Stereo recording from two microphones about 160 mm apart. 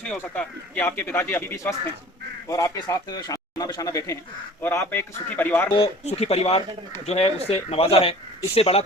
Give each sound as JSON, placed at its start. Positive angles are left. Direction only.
{"t": 0.0, "sound": "a man's voice", "side_deg": 5}
{"t": 6.1, "sound": "speech", "side_deg": 40}